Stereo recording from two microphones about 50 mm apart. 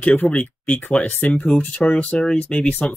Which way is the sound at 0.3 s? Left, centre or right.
Left.